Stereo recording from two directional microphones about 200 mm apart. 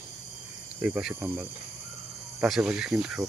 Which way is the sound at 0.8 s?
5° right (ahead or behind).